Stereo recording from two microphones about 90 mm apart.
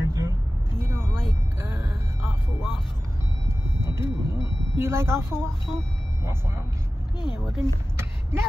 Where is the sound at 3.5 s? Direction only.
30° right (ahead or behind).